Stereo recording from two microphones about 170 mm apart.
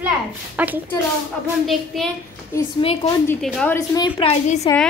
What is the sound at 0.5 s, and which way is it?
Speech, 10° right (ahead or behind).